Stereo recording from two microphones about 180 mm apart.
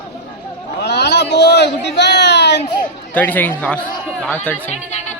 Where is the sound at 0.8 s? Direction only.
70° left (ahead or behind).